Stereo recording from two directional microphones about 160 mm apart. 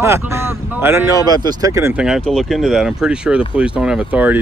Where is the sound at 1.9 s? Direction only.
5° right (ahead or behind).